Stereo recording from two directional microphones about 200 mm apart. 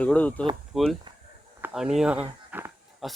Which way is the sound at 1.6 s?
Centre (ahead or behind).